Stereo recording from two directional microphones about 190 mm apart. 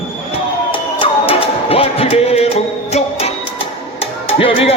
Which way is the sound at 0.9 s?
30° left (ahead or behind).